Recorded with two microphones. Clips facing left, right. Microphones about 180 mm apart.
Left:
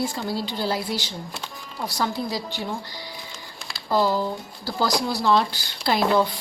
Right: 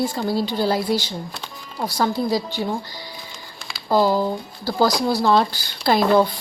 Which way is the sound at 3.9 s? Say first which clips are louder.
Right 4 dB; 40° right (ahead or behind).